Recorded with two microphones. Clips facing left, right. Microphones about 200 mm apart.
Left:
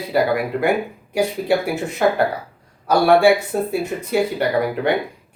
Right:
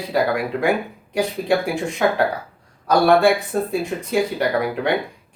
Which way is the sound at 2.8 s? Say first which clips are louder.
Left 1 dB; 10° left (ahead or behind).